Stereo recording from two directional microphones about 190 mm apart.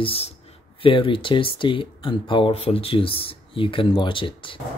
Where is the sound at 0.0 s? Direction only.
30° left (ahead or behind).